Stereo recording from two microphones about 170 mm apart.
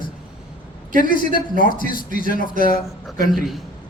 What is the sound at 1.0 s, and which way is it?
A man's voice, 55° left (ahead or behind).